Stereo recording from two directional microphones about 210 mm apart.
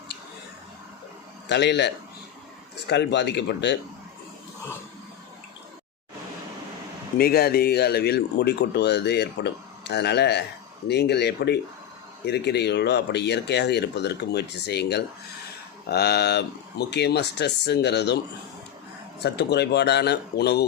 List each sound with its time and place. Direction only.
1.5 s speech: 55° left (ahead or behind)
7.2 s speech: 45° left (ahead or behind)
19.2 s speech: 55° left (ahead or behind)